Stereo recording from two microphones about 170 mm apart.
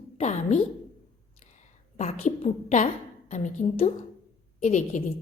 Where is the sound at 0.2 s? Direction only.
45° left (ahead or behind).